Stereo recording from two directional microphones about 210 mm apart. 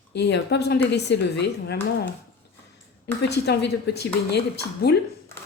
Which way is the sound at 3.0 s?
50° left (ahead or behind).